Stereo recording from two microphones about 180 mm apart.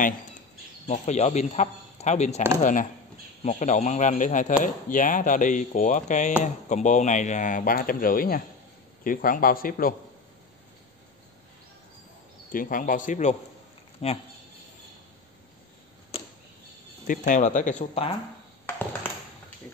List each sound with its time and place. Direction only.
0.8 s a man's voice: 40° left (ahead or behind)
12.5 s a man's voice: 50° left (ahead or behind)
17.0 s a man's voice: 45° left (ahead or behind)